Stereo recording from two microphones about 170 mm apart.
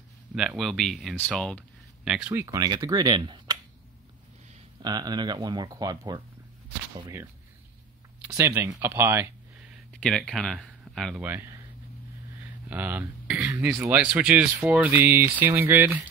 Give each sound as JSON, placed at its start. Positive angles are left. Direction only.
{"t": 0.3, "sound": "speech", "side_deg": -5}
{"t": 2.0, "sound": "speech", "side_deg": -5}
{"t": 2.3, "sound": "speech", "side_deg": -20}
{"t": 4.8, "sound": "speech", "side_deg": -25}
{"t": 8.2, "sound": "speech", "side_deg": -10}
{"t": 9.9, "sound": "speech", "side_deg": 5}
{"t": 11.2, "sound": "speech", "side_deg": -15}
{"t": 12.6, "sound": "speech", "side_deg": -10}